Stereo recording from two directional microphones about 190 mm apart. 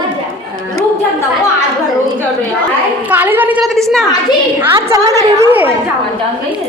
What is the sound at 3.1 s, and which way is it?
A woman's voice, 10° right (ahead or behind).